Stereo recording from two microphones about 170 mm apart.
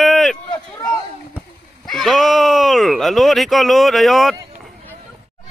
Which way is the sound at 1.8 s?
Centre (ahead or behind).